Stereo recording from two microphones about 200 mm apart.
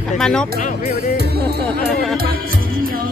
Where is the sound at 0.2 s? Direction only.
5° left (ahead or behind).